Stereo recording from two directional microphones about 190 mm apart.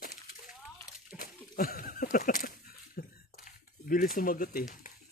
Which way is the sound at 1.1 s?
50° left (ahead or behind).